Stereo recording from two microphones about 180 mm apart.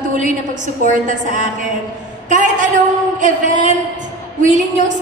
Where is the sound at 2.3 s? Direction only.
45° right (ahead or behind).